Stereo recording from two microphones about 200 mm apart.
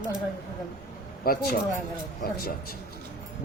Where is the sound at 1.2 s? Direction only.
50° left (ahead or behind).